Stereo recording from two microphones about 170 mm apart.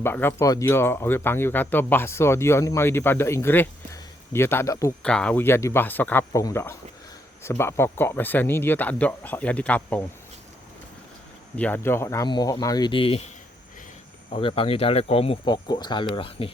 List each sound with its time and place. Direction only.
0.0 s speech: 10° left (ahead or behind)
5.0 s speech: 5° left (ahead or behind)
11.5 s speech: 10° left (ahead or behind); by 16.5 s 30° left (ahead or behind)